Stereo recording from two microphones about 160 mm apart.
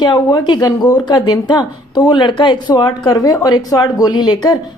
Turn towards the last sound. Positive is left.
turn(degrees=25)  # may be behind; listen again after turning